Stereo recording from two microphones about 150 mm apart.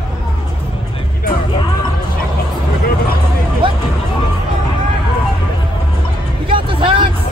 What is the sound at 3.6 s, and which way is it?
Music, 35° right (ahead or behind).